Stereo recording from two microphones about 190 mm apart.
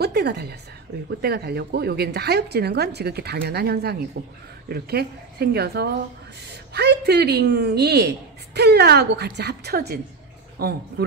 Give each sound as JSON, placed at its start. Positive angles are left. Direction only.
{"t": 0.0, "sound": "a woman's voice", "side_deg": -60}